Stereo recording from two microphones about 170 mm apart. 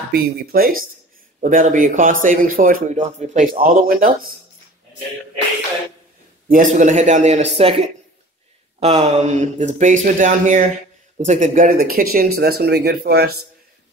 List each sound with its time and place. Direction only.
0.1 s speech: 60° right (ahead or behind)
6.5 s speech: 50° right (ahead or behind); by 13.3 s 70° right (ahead or behind)